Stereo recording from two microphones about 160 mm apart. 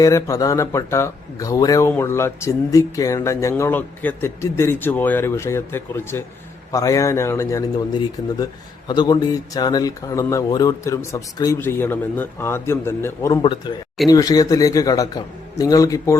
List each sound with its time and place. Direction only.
0.0 s speech: 20° left (ahead or behind)
8.9 s speech: 25° left (ahead or behind)
13.4 s speech: 30° left (ahead or behind)